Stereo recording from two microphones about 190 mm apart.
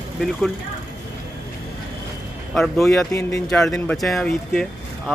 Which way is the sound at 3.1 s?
15° left (ahead or behind).